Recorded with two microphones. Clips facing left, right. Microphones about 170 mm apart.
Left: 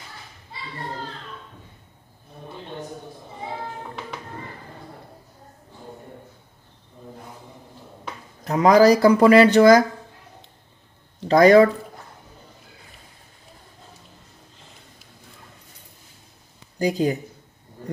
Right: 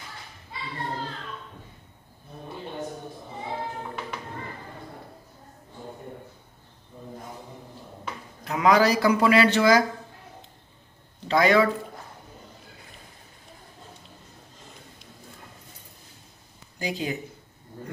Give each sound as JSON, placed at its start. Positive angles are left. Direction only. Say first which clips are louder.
{"t": 8.5, "sound": "speech", "louder": "left 6 dB", "side_deg": 40}
{"t": 11.2, "sound": "speech", "louder": "left 7 dB", "side_deg": 45}
{"t": 16.7, "sound": "speech", "louder": "left 8 dB", "side_deg": 40}